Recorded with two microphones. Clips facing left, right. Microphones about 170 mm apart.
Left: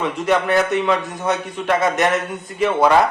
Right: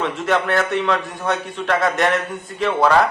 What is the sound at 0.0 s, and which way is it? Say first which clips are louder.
A man's voice: left 1 dB; 5° left (ahead or behind).